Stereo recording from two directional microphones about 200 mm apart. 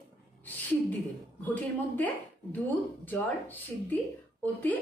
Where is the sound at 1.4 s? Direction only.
10° left (ahead or behind).